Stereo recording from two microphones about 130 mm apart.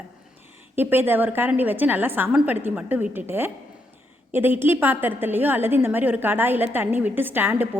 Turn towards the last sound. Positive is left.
turn(degrees=-15)  # may be behind; listen again after turning